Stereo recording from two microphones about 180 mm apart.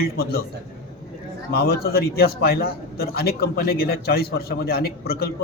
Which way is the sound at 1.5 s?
60° left (ahead or behind).